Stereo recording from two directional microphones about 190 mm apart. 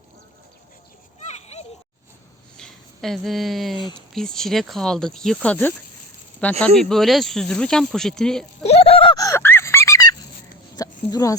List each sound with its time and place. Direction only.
1.2 s children playing: 35° left (ahead or behind)
2.6 s speech: centre (ahead or behind)
8.6 s a sound: 30° left (ahead or behind)